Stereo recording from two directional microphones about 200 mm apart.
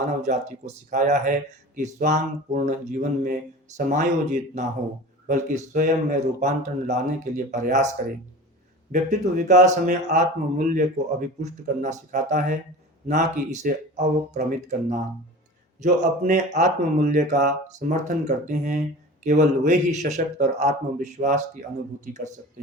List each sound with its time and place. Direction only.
0.0 s speech: 35° right (ahead or behind)
8.9 s speech: 40° right (ahead or behind)